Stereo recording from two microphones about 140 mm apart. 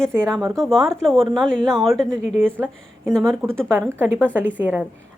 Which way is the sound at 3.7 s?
15° right (ahead or behind).